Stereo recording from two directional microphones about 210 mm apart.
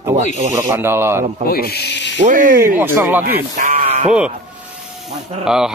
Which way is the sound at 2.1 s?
40° right (ahead or behind).